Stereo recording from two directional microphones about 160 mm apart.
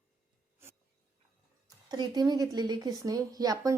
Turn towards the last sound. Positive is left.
turn(degrees=-25)  # may be behind; listen again after turning